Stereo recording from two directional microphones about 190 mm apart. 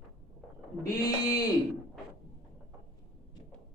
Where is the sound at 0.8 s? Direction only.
20° left (ahead or behind).